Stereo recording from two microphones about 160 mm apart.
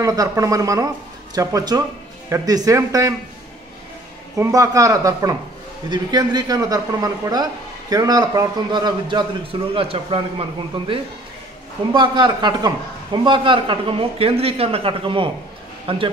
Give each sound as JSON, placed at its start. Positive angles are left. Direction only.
{"t": 0.0, "sound": "a man's voice", "side_deg": -20}
{"t": 4.4, "sound": "a man's voice", "side_deg": -20}
{"t": 11.9, "sound": "a man's voice", "side_deg": -30}